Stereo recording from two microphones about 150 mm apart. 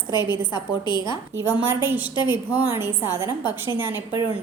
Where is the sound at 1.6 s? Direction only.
15° right (ahead or behind).